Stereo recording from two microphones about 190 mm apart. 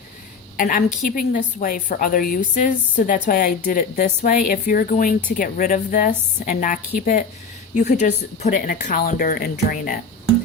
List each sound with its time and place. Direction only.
0.5 s a woman's voice: 45° left (ahead or behind)